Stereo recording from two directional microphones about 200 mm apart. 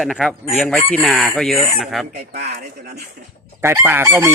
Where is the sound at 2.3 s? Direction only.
55° right (ahead or behind).